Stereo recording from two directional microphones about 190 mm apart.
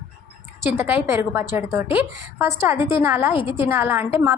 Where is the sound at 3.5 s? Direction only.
10° right (ahead or behind).